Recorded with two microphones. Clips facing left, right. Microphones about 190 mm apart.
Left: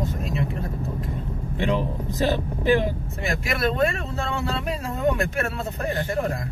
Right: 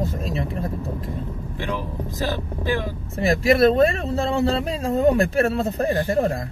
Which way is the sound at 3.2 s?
35° right (ahead or behind).